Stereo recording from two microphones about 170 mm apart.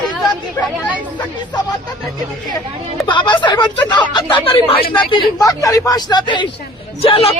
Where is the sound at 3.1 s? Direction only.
30° left (ahead or behind).